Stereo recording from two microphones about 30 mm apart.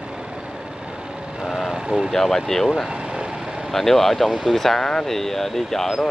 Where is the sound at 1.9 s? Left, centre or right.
Right.